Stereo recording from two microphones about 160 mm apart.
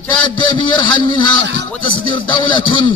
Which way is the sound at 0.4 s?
30° left (ahead or behind).